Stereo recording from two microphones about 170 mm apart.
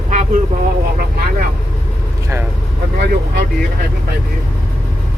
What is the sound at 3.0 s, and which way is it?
Speech, 65° right (ahead or behind).